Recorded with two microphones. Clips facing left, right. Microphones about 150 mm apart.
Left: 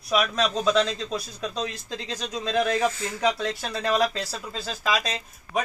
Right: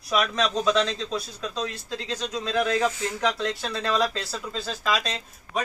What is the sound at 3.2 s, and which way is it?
Speech, 10° left (ahead or behind).